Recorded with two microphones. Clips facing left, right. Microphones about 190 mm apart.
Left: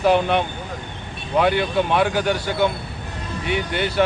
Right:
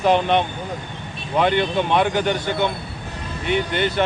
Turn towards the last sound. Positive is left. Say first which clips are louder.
# right 1 dB
turn(degrees=10)  # may be behind; listen again after turning